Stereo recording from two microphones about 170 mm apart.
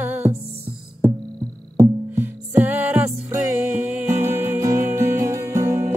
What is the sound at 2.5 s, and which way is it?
Music, 10° right (ahead or behind).